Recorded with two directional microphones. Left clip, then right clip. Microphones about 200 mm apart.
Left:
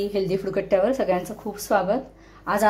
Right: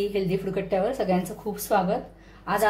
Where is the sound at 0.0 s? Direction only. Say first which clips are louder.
Left 2 dB; 30° left (ahead or behind).